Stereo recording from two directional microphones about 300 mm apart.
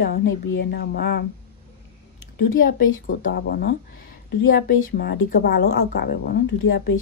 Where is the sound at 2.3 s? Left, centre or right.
Left.